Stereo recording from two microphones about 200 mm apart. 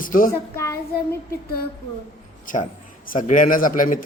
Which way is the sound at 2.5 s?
40° left (ahead or behind).